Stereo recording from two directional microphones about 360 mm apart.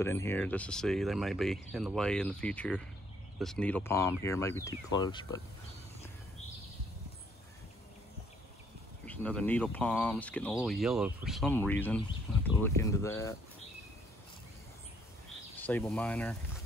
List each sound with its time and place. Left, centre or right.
0.0 s speech: centre
9.0 s speech: centre
15.5 s speech: centre